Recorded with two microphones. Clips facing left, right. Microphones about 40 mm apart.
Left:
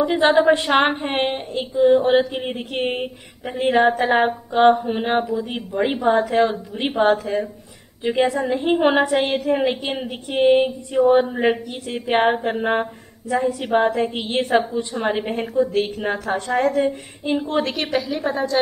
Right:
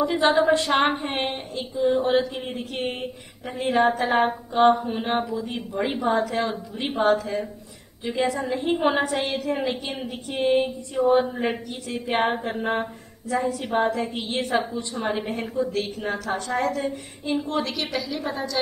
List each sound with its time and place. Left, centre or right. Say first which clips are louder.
0.0 s a woman's voice: left 4 dB; left
14.6 s a woman's voice: left 4 dB; centre
15.0 s a woman's voice: left 4 dB; left